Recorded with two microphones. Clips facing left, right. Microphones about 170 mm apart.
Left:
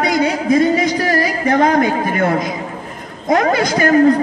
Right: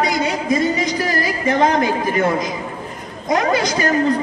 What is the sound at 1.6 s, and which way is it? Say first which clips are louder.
A man's voice: left 2 dB; 55° left (ahead or behind).